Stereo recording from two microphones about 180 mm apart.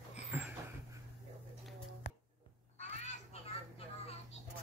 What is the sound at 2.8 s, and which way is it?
Children playing, 40° left (ahead or behind).